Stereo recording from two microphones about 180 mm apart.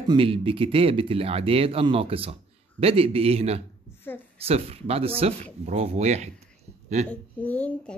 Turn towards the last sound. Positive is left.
turn(degrees=10)  # may be behind; listen again after turning